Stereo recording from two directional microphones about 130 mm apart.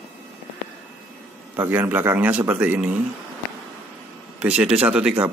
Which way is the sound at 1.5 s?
15° right (ahead or behind).